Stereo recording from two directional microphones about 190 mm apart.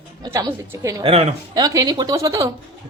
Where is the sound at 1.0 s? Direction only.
30° right (ahead or behind).